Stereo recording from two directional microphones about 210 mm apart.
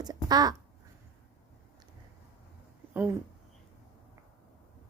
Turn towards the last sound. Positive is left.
turn(degrees=-10)  # may be behind; listen again after turning